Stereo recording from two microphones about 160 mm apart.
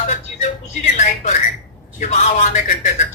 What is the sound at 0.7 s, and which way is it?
Speech, 45° left (ahead or behind).